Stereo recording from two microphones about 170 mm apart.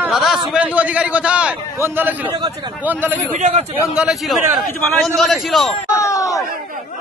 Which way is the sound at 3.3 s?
40° right (ahead or behind).